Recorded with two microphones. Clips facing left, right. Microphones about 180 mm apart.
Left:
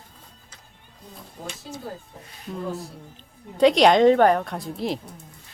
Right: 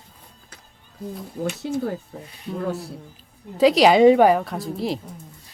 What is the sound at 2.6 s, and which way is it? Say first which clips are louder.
Speech: right 4 dB; 70° right (ahead or behind).